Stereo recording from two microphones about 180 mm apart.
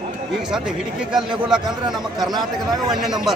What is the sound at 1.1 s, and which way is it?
A man's voice, 5° right (ahead or behind).